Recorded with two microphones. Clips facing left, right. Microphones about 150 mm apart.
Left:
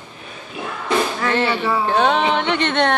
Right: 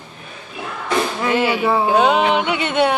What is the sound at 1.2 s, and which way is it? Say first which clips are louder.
Speech: right 2 dB; 10° right (ahead or behind).